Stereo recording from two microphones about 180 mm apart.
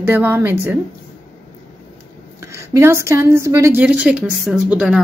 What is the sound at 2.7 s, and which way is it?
A woman's voice, 15° right (ahead or behind).